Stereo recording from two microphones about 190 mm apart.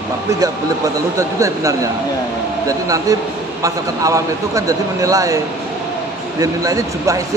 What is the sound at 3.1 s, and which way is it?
A man's voice, 15° right (ahead or behind).